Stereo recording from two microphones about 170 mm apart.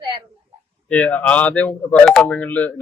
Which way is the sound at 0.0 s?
30° right (ahead or behind).